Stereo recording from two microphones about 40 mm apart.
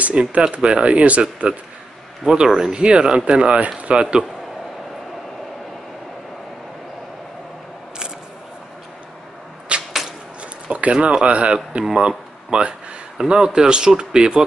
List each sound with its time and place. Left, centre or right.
0.0 s speech: right
2.2 s speech: centre
9.7 s arrow: right
10.7 s speech: right